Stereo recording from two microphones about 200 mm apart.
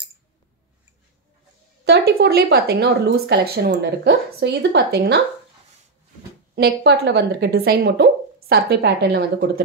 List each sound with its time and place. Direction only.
1.9 s speech: 50° right (ahead or behind)
6.5 s speech: 55° right (ahead or behind)